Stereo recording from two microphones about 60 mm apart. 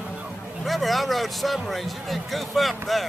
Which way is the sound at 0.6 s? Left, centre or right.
Centre.